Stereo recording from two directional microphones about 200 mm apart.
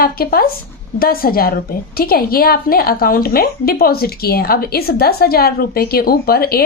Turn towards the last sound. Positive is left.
turn(degrees=50)  # may be behind; listen again after turning